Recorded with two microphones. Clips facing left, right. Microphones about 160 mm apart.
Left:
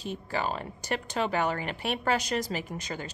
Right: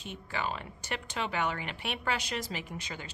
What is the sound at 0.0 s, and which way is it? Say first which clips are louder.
Speech: left 5 dB; 35° left (ahead or behind).